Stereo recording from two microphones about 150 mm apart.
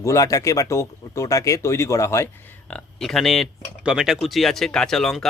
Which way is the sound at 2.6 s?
5° left (ahead or behind).